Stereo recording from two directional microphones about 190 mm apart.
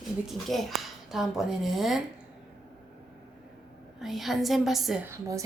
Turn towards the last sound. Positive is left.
turn(degrees=-15)  # may be behind; listen again after turning